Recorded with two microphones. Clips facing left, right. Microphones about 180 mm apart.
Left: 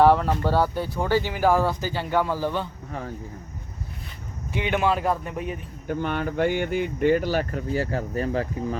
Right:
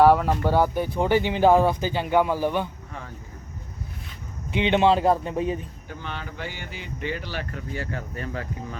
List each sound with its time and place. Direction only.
0.0 s speech: 10° right (ahead or behind)
4.5 s speech: 25° right (ahead or behind)
5.9 s speech: 55° left (ahead or behind); by 8.8 s 35° left (ahead or behind)